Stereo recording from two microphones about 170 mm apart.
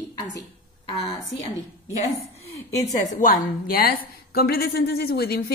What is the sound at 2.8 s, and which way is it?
A woman's voice, 45° left (ahead or behind).